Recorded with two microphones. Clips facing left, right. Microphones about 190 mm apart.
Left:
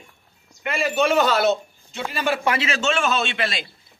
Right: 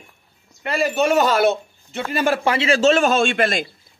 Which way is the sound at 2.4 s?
30° right (ahead or behind).